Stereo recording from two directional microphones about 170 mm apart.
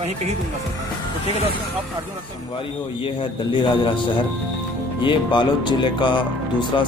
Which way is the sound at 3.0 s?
30° left (ahead or behind).